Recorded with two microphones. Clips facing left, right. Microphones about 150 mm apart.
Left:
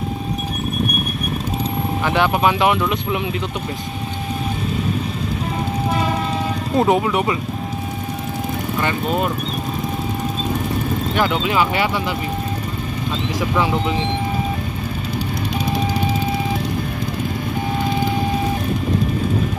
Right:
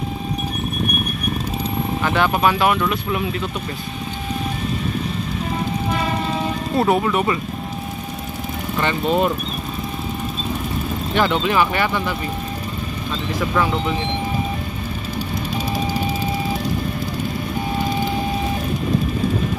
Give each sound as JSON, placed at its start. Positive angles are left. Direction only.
{"t": 2.0, "sound": "speech", "side_deg": 15}
{"t": 6.8, "sound": "speech", "side_deg": 15}
{"t": 11.1, "sound": "speech", "side_deg": 10}
{"t": 13.4, "sound": "speech", "side_deg": 15}